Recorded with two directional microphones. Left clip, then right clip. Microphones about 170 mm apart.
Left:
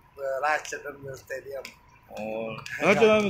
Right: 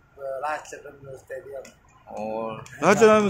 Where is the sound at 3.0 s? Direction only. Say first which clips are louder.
Right 5 dB; 30° right (ahead or behind).